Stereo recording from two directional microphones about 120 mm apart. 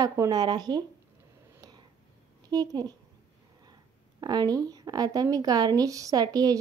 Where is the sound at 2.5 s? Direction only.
30° right (ahead or behind).